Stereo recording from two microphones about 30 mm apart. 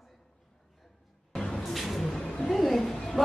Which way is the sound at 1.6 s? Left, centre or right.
Centre.